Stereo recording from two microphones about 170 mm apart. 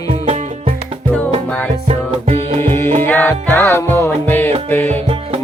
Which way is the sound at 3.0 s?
10° left (ahead or behind).